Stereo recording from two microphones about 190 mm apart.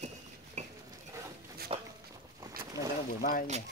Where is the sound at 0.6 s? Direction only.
40° right (ahead or behind).